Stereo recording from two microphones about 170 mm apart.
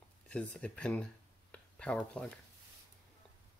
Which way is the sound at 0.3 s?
5° left (ahead or behind).